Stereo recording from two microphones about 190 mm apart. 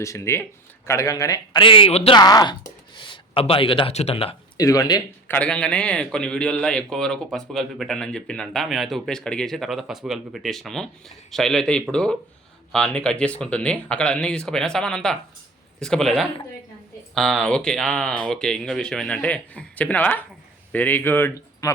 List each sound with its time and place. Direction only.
0.0 s a man's voice: 15° left (ahead or behind); by 2.1 s 30° left (ahead or behind)
2.1 s speech: 20° left (ahead or behind)
4.5 s speech: 20° left (ahead or behind)
5.4 s a man's voice: 5° left (ahead or behind)